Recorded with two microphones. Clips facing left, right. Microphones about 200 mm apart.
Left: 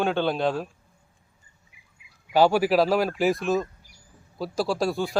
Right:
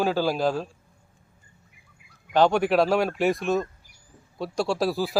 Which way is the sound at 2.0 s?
50° right (ahead or behind).